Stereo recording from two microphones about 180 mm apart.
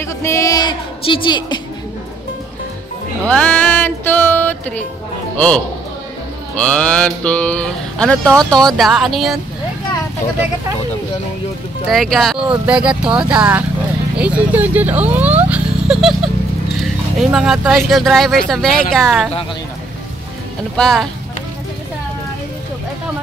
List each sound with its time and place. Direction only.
0.0 s a woman's voice: 15° left (ahead or behind)
3.3 s speech: 5° left (ahead or behind)
6.5 s speech: 5° left (ahead or behind)
11.9 s speech: centre (ahead or behind)
20.7 s speech: 5° left (ahead or behind)